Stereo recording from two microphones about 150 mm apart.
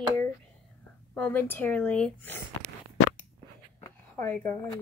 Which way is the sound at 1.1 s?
10° left (ahead or behind).